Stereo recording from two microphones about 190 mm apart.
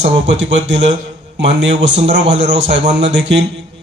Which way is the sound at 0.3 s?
75° right (ahead or behind).